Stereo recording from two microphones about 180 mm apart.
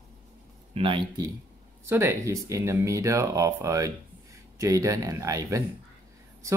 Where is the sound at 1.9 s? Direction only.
15° right (ahead or behind).